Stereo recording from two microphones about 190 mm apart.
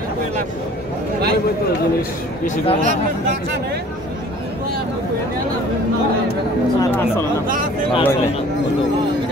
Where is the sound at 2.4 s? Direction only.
35° left (ahead or behind).